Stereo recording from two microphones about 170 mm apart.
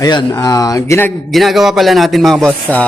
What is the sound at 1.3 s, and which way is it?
Speech, centre (ahead or behind).